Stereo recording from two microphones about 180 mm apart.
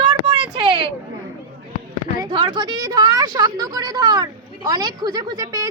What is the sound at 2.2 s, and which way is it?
A woman's voice, 25° right (ahead or behind).